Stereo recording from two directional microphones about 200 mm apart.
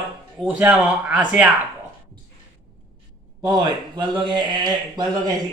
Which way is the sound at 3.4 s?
20° right (ahead or behind).